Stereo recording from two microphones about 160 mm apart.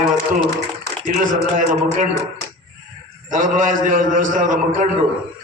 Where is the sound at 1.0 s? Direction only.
55° right (ahead or behind).